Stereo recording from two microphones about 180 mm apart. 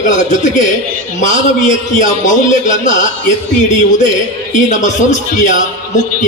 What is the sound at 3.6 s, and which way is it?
A man's voice, 40° left (ahead or behind).